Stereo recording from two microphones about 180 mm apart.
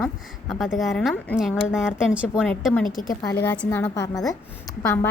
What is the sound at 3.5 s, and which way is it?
Speech, 10° left (ahead or behind).